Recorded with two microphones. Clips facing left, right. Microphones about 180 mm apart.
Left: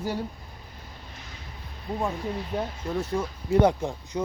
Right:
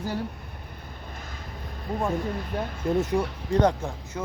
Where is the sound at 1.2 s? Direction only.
50° right (ahead or behind).